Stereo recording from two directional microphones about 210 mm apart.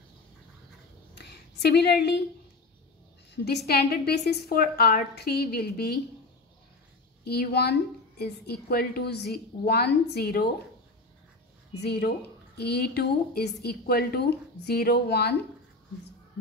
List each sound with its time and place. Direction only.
1.1 s a sound: 50° left (ahead or behind)
3.4 s a woman's voice: 50° left (ahead or behind)
7.2 s a woman's voice: 50° left (ahead or behind)
11.8 s a woman's voice: 50° left (ahead or behind)